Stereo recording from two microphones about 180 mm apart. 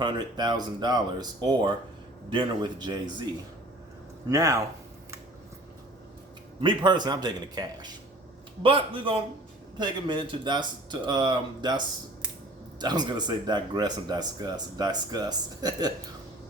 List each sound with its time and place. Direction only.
0.0 s speech: 25° right (ahead or behind)
4.3 s speech: 20° right (ahead or behind)
6.6 s speech: 25° right (ahead or behind)
12.8 s speech: 25° right (ahead or behind)